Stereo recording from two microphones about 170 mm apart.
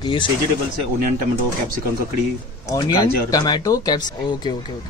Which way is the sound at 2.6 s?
20° left (ahead or behind).